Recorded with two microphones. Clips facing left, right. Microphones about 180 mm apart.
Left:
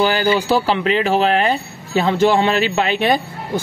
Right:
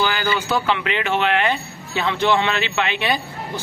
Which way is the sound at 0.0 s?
35° left (ahead or behind).